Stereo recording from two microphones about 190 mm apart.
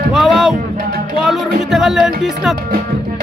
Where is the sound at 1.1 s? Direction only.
Centre (ahead or behind).